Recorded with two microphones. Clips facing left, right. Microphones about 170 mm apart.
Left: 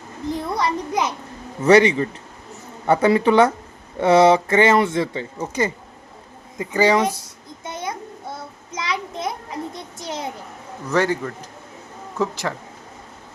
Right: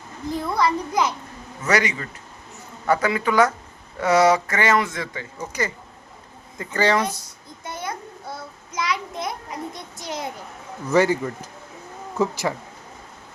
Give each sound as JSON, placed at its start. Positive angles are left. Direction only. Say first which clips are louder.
{"t": 0.3, "sound": "a sound", "louder": "right 2 dB", "side_deg": 20}
{"t": 1.6, "sound": "speech", "louder": "left 9 dB", "side_deg": 30}
{"t": 6.6, "sound": "speech", "louder": "left 4 dB", "side_deg": 15}
{"t": 7.6, "sound": "child singing", "louder": "left 2 dB", "side_deg": 20}
{"t": 10.8, "sound": "speech", "louder": "right 2 dB", "side_deg": -5}